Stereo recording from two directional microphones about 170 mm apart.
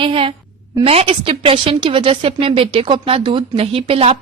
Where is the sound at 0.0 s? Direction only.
30° right (ahead or behind).